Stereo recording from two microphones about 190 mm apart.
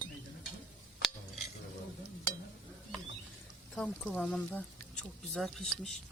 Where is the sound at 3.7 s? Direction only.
5° left (ahead or behind).